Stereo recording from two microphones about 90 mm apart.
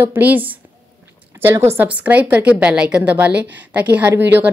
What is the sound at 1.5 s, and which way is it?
Speech, 30° right (ahead or behind).